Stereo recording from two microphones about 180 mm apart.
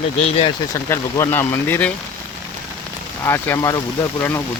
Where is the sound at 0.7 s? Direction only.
15° left (ahead or behind).